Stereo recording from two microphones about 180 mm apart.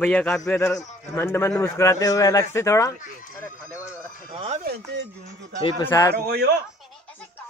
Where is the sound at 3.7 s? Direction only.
15° left (ahead or behind).